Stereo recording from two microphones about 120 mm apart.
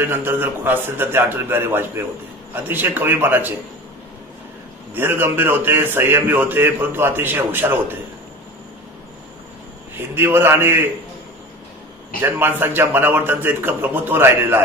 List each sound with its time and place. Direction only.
0.0 s a man's voice: 15° right (ahead or behind)
4.9 s a man's voice: 15° right (ahead or behind)
9.9 s a man's voice: 20° right (ahead or behind)
12.2 s a man's voice: 15° right (ahead or behind)